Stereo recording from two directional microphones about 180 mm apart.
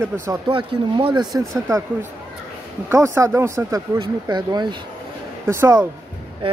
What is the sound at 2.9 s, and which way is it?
Speech, 15° right (ahead or behind).